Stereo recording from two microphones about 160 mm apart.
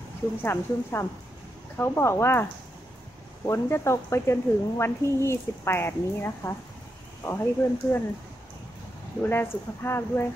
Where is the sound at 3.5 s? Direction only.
15° left (ahead or behind).